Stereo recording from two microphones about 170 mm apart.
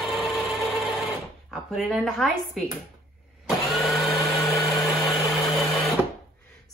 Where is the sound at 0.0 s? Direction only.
Centre (ahead or behind).